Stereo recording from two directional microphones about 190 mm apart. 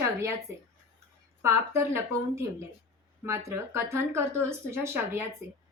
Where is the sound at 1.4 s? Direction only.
15° right (ahead or behind).